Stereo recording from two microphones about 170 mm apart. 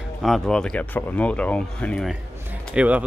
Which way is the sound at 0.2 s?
Centre (ahead or behind).